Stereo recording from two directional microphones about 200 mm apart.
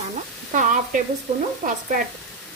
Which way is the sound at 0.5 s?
40° right (ahead or behind).